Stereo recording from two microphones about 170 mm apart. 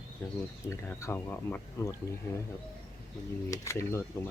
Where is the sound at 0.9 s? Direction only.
15° left (ahead or behind).